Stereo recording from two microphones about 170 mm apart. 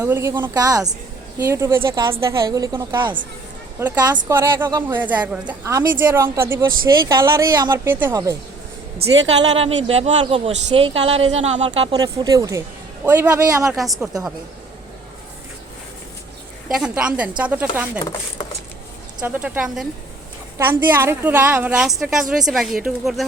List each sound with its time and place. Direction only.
0.0 s a woman's voice: 15° right (ahead or behind)
9.4 s a woman's voice: 35° right (ahead or behind); by 13.7 s 20° right (ahead or behind)
13.7 s a woman's voice: centre (ahead or behind)
16.6 s a woman's voice: 5° right (ahead or behind)
19.2 s a woman's voice: 10° right (ahead or behind)